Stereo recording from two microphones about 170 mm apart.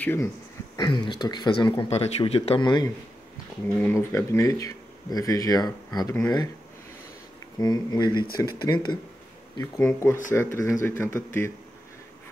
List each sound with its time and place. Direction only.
0.0 s speech: 10° left (ahead or behind)
0.7 s speech: 25° left (ahead or behind)
1.9 s a man's voice: 40° left (ahead or behind)
3.6 s speech: 15° left (ahead or behind)
7.5 s speech: 20° left (ahead or behind)